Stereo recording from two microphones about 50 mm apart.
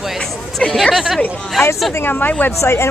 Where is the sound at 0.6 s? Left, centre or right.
Centre.